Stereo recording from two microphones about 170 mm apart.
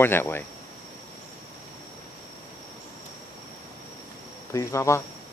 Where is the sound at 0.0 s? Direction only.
10° left (ahead or behind).